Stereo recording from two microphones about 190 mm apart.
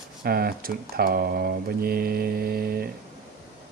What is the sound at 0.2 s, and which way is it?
Speech, 50° right (ahead or behind).